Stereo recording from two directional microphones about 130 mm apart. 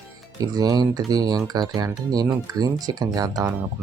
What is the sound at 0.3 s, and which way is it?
Speech, 30° right (ahead or behind).